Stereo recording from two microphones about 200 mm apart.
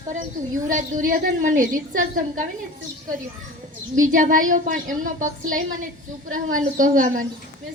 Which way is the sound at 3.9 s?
40° right (ahead or behind).